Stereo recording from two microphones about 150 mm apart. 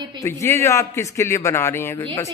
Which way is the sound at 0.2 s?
15° left (ahead or behind).